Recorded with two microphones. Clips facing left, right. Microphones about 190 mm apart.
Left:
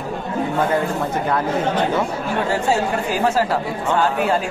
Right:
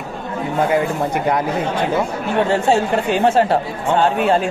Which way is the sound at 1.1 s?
15° right (ahead or behind).